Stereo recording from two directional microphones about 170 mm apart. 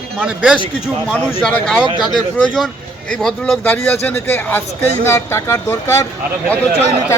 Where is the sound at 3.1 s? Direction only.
5° left (ahead or behind).